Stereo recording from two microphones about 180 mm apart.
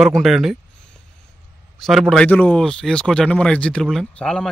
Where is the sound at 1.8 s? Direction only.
Centre (ahead or behind).